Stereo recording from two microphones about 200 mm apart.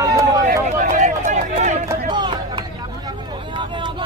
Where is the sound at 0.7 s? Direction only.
35° right (ahead or behind).